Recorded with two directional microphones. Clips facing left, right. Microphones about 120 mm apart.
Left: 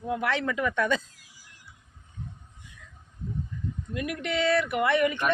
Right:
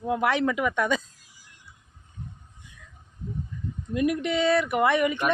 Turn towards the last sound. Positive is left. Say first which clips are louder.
# right 2 dB
turn(degrees=-20)  # may be behind; listen again after turning